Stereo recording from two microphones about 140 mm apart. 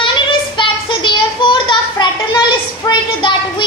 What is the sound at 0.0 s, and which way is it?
Child singing, 35° left (ahead or behind).